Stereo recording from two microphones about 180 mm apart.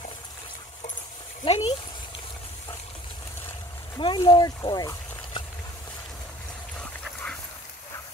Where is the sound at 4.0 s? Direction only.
25° left (ahead or behind).